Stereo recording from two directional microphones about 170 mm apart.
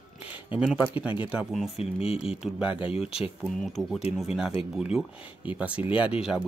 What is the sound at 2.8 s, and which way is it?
Speech, 35° left (ahead or behind).